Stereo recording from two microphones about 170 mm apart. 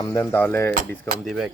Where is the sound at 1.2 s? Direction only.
Centre (ahead or behind).